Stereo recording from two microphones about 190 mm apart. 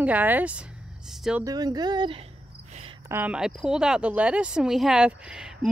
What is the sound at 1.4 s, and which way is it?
Speech, 20° right (ahead or behind).